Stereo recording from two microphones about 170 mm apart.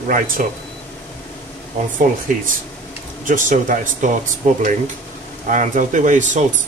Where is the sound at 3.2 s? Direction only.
50° right (ahead or behind).